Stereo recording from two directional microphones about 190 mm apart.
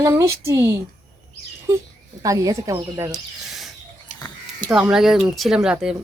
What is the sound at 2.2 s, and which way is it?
Speech, 15° right (ahead or behind).